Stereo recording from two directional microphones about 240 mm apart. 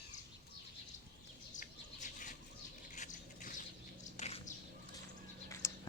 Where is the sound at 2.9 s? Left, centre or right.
Left.